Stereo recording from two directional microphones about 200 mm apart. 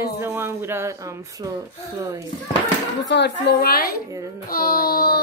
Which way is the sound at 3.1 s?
60° left (ahead or behind).